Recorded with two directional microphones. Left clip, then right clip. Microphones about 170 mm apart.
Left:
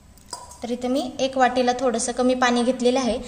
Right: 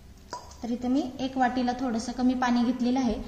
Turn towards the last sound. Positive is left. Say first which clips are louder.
# left 8 dB
turn(degrees=50)  # may be behind; listen again after turning